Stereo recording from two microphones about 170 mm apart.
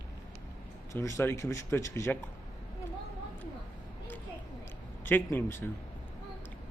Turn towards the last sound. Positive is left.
turn(degrees=15)  # may be behind; listen again after turning